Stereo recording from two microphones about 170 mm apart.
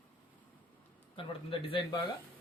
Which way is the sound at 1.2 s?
30° left (ahead or behind).